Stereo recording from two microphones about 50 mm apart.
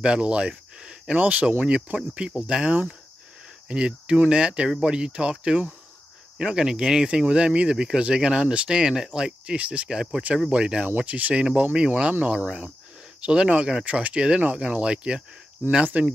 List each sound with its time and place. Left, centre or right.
0.0 s speech: right
1.1 s speech: right
9.6 s speech: right
9.8 s speech: centre
11.0 s speech: right